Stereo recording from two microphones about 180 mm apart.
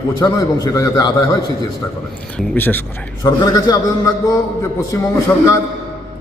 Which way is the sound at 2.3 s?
10° left (ahead or behind).